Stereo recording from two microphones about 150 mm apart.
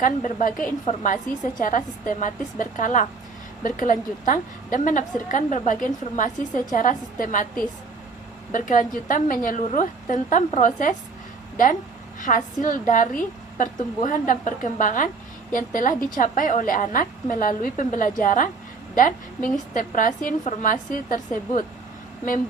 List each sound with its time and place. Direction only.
0.0 s a woman's voice: 60° left (ahead or behind)